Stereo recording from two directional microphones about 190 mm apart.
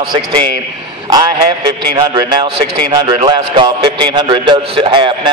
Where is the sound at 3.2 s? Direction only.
25° right (ahead or behind).